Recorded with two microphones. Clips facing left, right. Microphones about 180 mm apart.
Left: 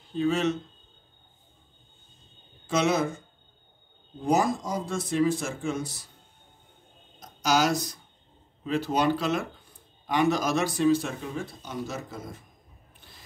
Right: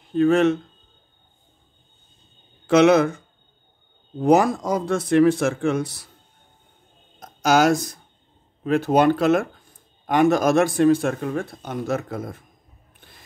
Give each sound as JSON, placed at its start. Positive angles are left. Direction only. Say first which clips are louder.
{"t": 0.1, "sound": "speech", "louder": "right 8 dB", "side_deg": -55}
{"t": 2.6, "sound": "speech", "louder": "right 10 dB", "side_deg": -65}
{"t": 4.2, "sound": "speech", "louder": "right 7 dB", "side_deg": -65}
{"t": 7.2, "sound": "speech", "louder": "right 6 dB", "side_deg": -50}